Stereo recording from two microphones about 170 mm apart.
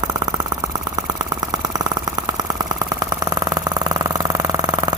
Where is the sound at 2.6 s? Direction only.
20° right (ahead or behind).